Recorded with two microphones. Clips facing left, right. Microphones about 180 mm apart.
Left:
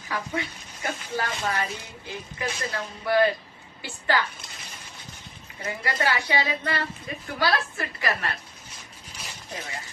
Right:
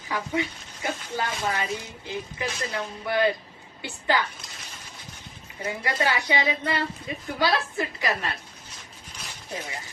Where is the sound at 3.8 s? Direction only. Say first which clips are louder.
Right 1 dB; 20° right (ahead or behind).